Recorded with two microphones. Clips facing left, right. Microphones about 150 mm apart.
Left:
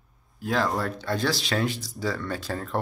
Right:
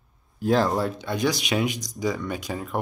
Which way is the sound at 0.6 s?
Centre (ahead or behind).